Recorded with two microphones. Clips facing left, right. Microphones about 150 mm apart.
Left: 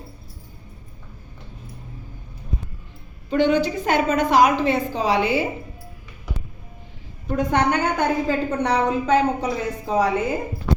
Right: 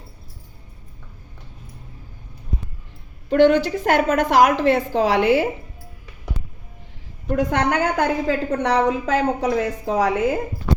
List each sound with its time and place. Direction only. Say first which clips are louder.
3.2 s a woman's voice: right 4 dB; 80° right
7.3 s a woman's voice: even; 90° right